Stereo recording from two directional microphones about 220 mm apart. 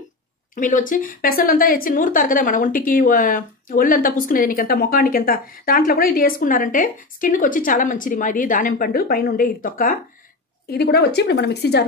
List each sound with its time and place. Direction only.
0.6 s a woman's voice: 35° left (ahead or behind)